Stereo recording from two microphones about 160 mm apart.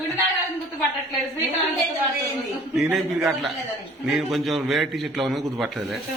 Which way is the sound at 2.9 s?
Centre (ahead or behind).